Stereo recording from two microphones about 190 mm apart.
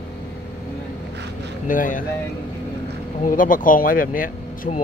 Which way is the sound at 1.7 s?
45° left (ahead or behind).